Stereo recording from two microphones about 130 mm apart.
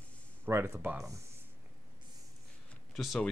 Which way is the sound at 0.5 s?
20° right (ahead or behind).